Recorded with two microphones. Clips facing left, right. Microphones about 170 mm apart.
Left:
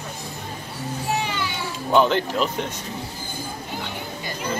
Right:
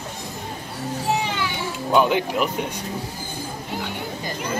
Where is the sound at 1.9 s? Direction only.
10° right (ahead or behind).